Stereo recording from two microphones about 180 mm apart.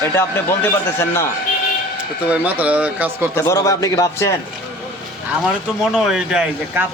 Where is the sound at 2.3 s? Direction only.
10° right (ahead or behind).